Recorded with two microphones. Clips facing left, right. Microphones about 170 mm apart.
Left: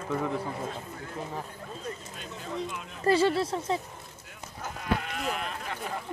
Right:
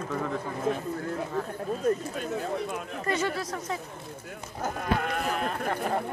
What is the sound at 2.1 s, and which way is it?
Speech, 50° right (ahead or behind).